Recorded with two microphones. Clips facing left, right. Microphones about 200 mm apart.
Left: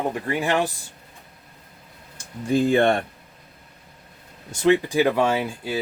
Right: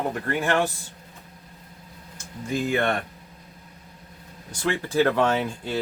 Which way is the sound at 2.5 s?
30° left (ahead or behind).